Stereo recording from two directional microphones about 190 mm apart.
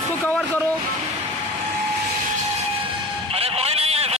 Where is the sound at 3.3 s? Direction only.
30° right (ahead or behind).